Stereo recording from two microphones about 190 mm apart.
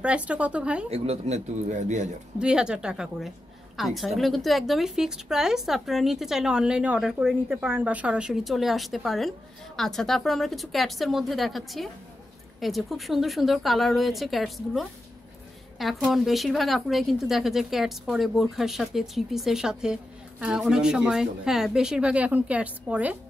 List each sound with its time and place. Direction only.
0.0 s speech: 5° right (ahead or behind)
0.8 s speech: 35° right (ahead or behind)
2.3 s a woman's voice: 5° right (ahead or behind)